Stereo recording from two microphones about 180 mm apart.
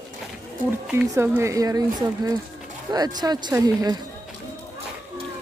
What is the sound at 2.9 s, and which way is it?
Speech, 20° right (ahead or behind).